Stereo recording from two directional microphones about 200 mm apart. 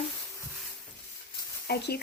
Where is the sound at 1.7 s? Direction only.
50° left (ahead or behind).